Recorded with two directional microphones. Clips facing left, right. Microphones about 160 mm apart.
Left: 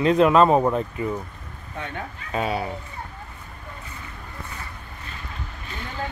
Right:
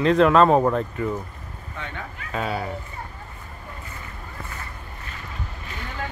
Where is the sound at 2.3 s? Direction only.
20° left (ahead or behind).